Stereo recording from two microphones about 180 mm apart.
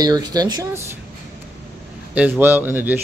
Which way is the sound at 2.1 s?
10° right (ahead or behind).